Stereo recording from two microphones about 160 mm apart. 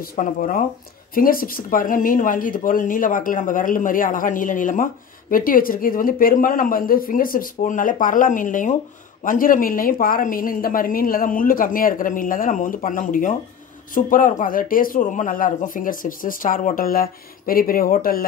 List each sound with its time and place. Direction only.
0.0 s speech: 60° left (ahead or behind)